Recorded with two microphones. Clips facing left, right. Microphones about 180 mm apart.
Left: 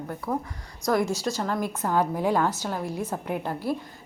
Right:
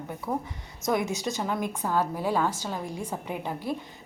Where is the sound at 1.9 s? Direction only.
15° left (ahead or behind).